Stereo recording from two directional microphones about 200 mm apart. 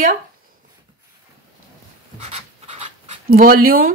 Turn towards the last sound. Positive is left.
turn(degrees=-45)  # may be behind; listen again after turning